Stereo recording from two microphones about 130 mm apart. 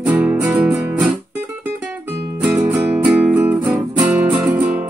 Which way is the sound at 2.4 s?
15° right (ahead or behind).